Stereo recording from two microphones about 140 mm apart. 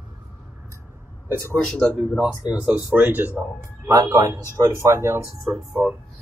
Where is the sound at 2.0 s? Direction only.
5° right (ahead or behind).